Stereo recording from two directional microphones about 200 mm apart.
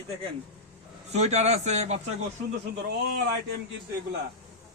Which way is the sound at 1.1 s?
35° right (ahead or behind).